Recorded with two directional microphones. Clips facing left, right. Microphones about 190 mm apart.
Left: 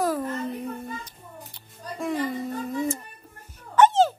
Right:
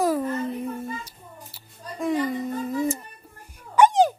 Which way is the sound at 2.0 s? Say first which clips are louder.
Right 3 dB; centre (ahead or behind).